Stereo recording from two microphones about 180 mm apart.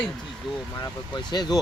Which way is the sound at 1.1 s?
25° left (ahead or behind).